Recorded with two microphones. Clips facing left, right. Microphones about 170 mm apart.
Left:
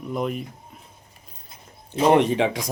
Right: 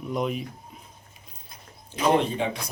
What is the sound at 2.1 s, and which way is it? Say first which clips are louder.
Speech: left 5 dB; 80° left.